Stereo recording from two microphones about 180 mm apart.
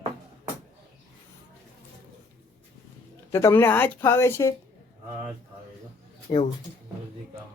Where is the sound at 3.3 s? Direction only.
15° left (ahead or behind).